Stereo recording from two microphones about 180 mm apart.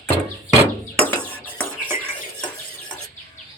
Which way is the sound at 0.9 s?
10° left (ahead or behind).